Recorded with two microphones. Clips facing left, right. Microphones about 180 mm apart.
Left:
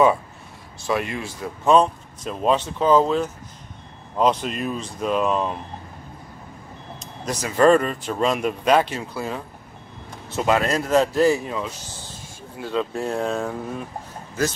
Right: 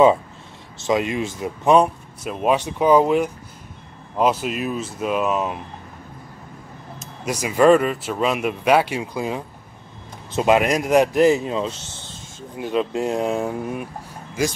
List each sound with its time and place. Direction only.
0.7 s speech: 20° right (ahead or behind)
7.0 s speech: 10° right (ahead or behind)